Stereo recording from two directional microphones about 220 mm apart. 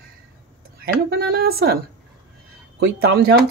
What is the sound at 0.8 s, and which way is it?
Speech, 45° right (ahead or behind).